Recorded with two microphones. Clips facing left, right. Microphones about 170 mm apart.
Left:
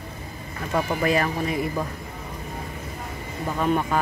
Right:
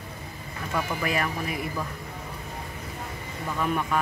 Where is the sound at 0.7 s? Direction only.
35° left (ahead or behind).